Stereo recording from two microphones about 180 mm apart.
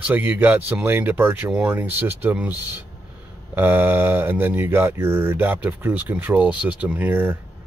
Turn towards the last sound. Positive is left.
turn(degrees=-10)  # may be behind; listen again after turning